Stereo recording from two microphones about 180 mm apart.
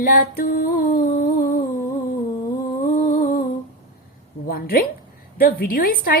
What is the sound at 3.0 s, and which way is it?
Humming, 45° left (ahead or behind).